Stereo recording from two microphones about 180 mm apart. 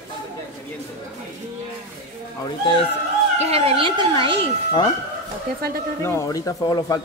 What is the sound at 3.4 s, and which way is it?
Speech, 35° right (ahead or behind).